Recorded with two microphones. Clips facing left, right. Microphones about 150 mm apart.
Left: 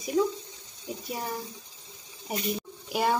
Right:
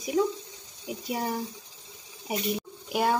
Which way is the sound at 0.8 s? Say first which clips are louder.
Right 3 dB; 20° right (ahead or behind).